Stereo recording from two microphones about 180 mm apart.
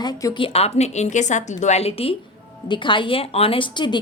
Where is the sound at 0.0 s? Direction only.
20° left (ahead or behind).